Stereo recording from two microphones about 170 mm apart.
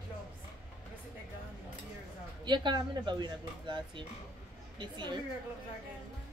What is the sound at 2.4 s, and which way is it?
A woman's voice, 25° right (ahead or behind).